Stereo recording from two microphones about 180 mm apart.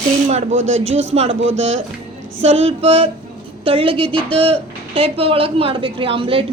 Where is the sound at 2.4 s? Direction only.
35° right (ahead or behind).